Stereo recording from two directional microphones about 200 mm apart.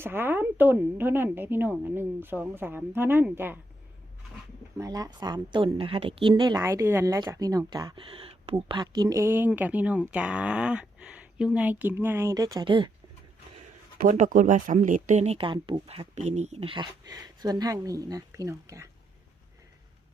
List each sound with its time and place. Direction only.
0.0 s a woman's voice: 10° right (ahead or behind)
4.8 s a woman's voice: 20° right (ahead or behind)
14.0 s speech: 40° right (ahead or behind); by 18.9 s 15° right (ahead or behind)